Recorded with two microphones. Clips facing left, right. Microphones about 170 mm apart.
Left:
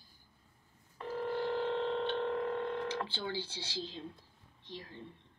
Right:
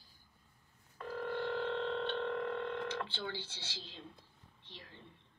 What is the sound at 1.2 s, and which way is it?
Telephone dialing, 35° left (ahead or behind).